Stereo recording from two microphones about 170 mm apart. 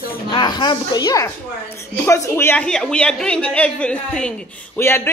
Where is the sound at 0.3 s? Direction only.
25° left (ahead or behind).